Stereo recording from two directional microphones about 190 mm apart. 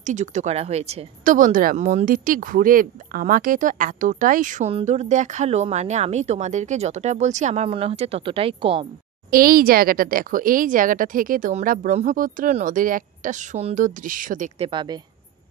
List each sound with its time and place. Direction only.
0.0 s speech: 40° right (ahead or behind)
9.3 s speech: 50° right (ahead or behind)
14.7 s a woman's voice: 25° right (ahead or behind)